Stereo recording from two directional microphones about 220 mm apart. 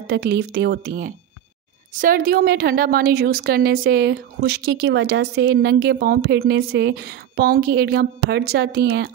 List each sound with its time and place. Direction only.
0.0 s a woman's voice: 50° right (ahead or behind)